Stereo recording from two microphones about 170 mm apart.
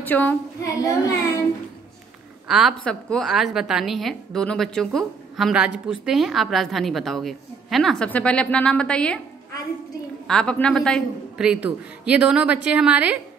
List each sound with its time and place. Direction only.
0.0 s speech: 10° left (ahead or behind)
0.8 s child singing: 20° left (ahead or behind)
2.4 s a woman's voice: centre (ahead or behind)
10.2 s a woman's voice: 5° left (ahead or behind)